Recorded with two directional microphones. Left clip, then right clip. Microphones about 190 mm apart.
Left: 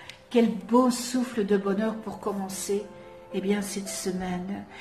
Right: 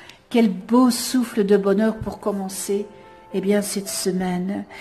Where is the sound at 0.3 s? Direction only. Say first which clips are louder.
Right 4 dB; 50° right (ahead or behind).